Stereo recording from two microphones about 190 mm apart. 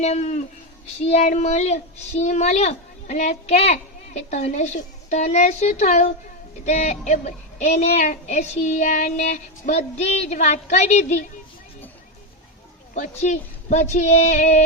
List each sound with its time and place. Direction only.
0.0 s speech: 35° left (ahead or behind)
12.9 s speech: 40° left (ahead or behind)